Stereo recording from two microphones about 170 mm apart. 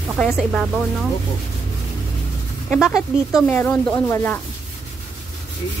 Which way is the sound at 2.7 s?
Centre (ahead or behind).